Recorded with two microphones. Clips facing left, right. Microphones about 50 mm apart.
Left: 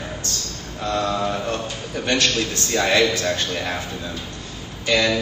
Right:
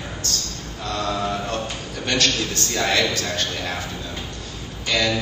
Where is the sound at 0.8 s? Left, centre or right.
Left.